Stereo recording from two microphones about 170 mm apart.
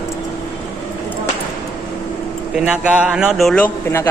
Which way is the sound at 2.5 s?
5° right (ahead or behind).